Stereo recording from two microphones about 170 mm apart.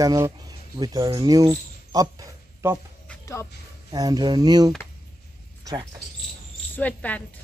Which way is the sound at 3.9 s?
25° right (ahead or behind).